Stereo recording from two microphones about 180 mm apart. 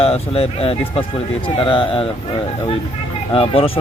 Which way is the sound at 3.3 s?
30° left (ahead or behind).